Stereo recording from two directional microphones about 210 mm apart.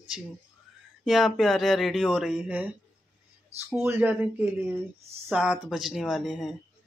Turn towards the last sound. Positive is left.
turn(degrees=0)  # may be behind; listen again after turning